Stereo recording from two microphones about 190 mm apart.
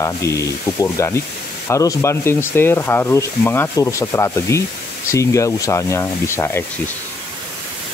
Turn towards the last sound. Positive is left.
turn(degrees=15)  # may be behind; listen again after turning